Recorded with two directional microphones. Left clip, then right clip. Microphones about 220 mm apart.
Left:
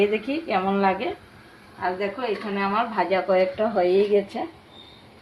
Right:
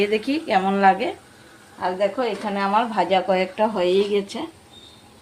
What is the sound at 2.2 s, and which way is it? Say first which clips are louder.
Speech: right 3 dB; 40° right (ahead or behind).